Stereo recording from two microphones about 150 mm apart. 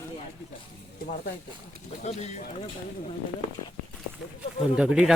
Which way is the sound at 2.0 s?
45° left (ahead or behind).